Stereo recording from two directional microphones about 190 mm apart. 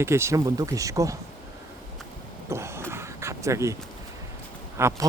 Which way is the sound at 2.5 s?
15° right (ahead or behind).